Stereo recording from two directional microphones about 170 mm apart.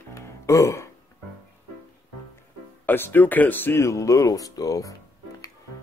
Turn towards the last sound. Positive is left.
turn(degrees=20)  # may be behind; listen again after turning